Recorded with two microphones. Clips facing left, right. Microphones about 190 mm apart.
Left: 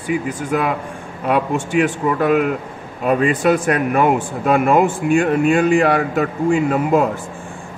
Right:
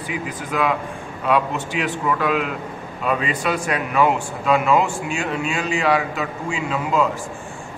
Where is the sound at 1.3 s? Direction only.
50° left (ahead or behind).